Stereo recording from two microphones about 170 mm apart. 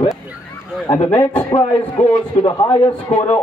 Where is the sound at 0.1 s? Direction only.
Centre (ahead or behind).